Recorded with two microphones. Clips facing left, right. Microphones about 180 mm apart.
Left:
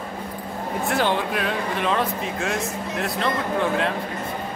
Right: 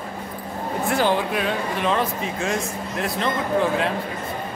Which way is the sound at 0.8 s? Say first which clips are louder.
Right 2 dB; centre (ahead or behind).